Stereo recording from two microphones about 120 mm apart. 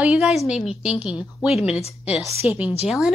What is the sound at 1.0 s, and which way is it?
Speech, 5° right (ahead or behind).